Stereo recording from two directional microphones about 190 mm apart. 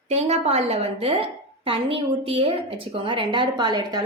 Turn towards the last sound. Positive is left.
turn(degrees=-20)  # may be behind; listen again after turning